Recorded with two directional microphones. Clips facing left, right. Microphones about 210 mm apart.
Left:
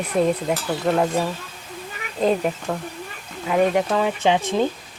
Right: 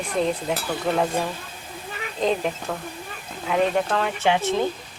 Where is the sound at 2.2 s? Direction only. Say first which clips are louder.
Left 3 dB; 5° left (ahead or behind).